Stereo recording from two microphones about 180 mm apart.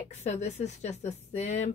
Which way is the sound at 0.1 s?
40° left (ahead or behind).